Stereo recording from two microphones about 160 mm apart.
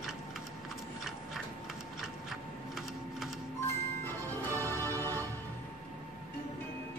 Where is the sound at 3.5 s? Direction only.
15° left (ahead or behind).